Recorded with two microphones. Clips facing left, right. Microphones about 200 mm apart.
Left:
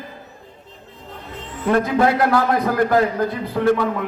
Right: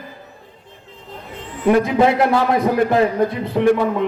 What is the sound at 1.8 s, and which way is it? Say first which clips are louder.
A man's voice: left 1 dB; 20° right (ahead or behind).